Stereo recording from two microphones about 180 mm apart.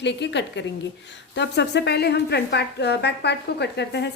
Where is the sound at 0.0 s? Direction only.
75° left (ahead or behind).